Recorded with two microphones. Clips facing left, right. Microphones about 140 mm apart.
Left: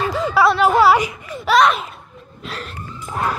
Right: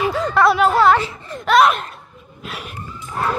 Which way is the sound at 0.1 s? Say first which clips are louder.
Left 2 dB; 5° left (ahead or behind).